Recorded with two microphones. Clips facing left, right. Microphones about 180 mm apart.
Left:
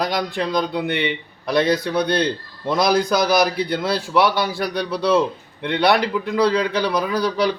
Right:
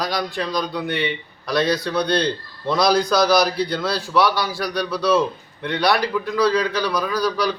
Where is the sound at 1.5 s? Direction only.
55° left (ahead or behind).